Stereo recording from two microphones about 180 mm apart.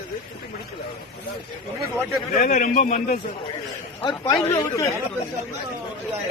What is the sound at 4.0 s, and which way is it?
Speech, 25° left (ahead or behind).